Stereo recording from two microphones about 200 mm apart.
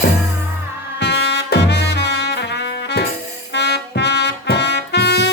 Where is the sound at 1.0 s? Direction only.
60° left (ahead or behind).